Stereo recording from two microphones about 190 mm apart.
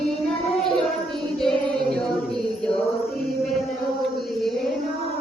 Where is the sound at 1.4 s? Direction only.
Centre (ahead or behind).